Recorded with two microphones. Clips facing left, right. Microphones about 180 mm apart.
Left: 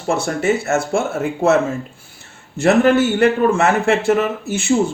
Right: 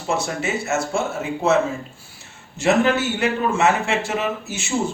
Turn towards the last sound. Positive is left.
turn(degrees=55)  # may be behind; listen again after turning